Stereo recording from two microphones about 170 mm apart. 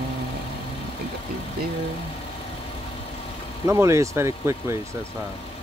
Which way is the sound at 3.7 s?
15° right (ahead or behind).